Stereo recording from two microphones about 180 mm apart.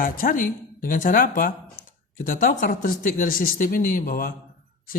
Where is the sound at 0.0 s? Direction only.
50° left (ahead or behind).